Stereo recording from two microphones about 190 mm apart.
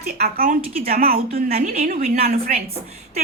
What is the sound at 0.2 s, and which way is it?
Speech, 50° right (ahead or behind).